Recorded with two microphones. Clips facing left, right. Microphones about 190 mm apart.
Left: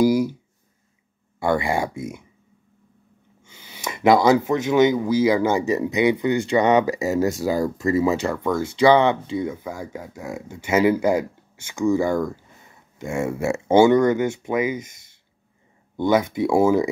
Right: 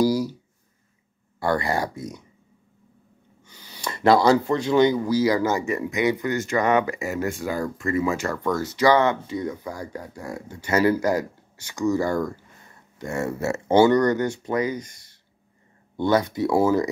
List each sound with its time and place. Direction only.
1.4 s speech: 15° left (ahead or behind)
3.6 s speech: 15° left (ahead or behind)
7.1 s speech: 40° left (ahead or behind)
8.3 s speech: 10° left (ahead or behind)
10.8 s speech: 20° left (ahead or behind)
14.4 s speech: 20° left (ahead or behind)
16.0 s speech: 20° left (ahead or behind)